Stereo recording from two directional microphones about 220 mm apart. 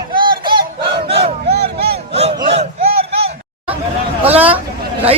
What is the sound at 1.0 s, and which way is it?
Battle cry, 25° right (ahead or behind).